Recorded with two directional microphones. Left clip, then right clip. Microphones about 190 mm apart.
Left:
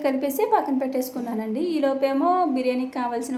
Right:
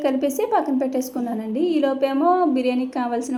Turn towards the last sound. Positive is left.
turn(degrees=-25)  # may be behind; listen again after turning